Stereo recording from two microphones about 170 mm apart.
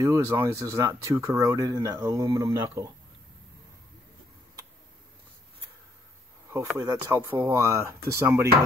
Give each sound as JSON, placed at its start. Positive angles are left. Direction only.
{"t": 0.0, "sound": "speech", "side_deg": -15}
{"t": 6.5, "sound": "speech", "side_deg": -20}